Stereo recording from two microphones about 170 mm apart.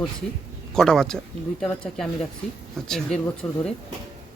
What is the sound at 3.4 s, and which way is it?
Speech, 15° left (ahead or behind).